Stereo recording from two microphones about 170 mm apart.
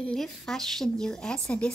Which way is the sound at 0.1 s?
Centre (ahead or behind).